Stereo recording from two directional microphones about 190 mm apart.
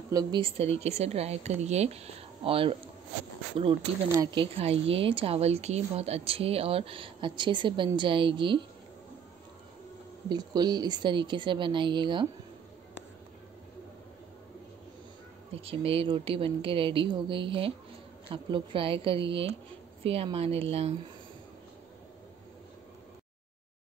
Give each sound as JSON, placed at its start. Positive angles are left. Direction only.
{"t": 0.1, "sound": "speech", "side_deg": -20}
{"t": 4.2, "sound": "speech", "side_deg": -20}
{"t": 10.3, "sound": "speech", "side_deg": -20}
{"t": 15.6, "sound": "speech", "side_deg": -30}